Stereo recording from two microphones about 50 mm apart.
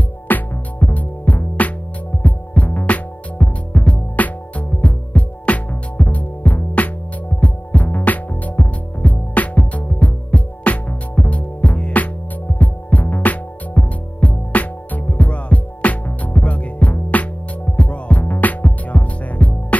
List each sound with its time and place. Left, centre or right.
0.3 s music: left